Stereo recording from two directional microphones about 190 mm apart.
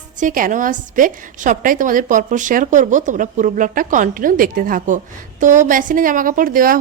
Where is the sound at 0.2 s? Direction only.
45° right (ahead or behind).